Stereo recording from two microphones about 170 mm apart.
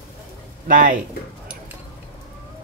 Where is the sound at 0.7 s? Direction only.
50° right (ahead or behind).